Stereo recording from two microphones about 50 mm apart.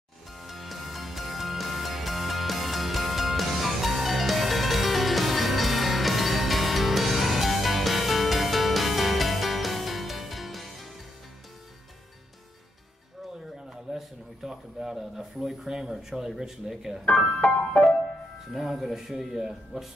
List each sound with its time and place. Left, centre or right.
0.4 s music: centre
13.9 s a sound: centre
17.2 s music: left
18.5 s speech: centre